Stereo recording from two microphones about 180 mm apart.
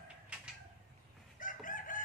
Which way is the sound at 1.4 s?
45° left (ahead or behind).